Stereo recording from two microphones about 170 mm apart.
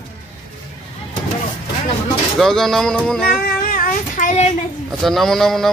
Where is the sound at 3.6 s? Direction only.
55° left (ahead or behind).